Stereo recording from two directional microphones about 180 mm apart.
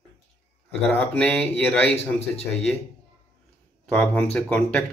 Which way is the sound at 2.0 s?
35° left (ahead or behind).